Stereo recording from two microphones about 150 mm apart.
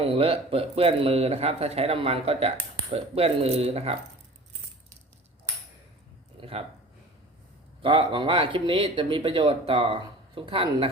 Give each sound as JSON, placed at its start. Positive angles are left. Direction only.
{"t": 0.0, "sound": "speech", "side_deg": -40}
{"t": 6.3, "sound": "a sound", "side_deg": -40}
{"t": 7.8, "sound": "speech", "side_deg": -35}